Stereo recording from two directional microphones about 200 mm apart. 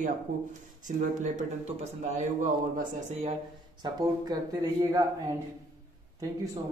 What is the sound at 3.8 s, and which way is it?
Speech, 20° right (ahead or behind).